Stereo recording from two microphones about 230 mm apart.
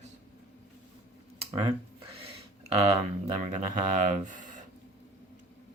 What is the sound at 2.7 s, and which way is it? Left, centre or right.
Speech, right.